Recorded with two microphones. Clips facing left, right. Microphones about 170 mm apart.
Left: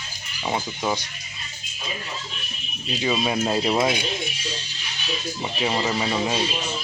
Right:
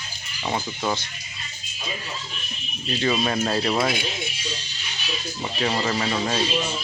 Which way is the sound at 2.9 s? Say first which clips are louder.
Right 1 dB; 10° left (ahead or behind).